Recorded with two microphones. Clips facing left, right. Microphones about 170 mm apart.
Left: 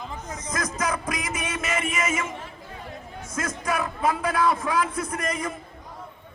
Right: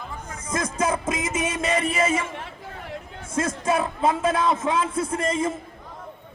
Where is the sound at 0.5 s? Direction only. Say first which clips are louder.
Right 4 dB; 25° right (ahead or behind).